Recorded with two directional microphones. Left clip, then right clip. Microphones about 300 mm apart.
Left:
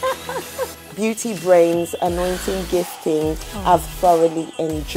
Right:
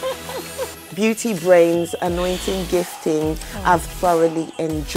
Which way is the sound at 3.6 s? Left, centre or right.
Right.